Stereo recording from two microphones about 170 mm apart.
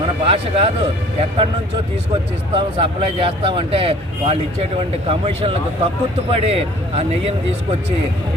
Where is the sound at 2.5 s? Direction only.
30° right (ahead or behind).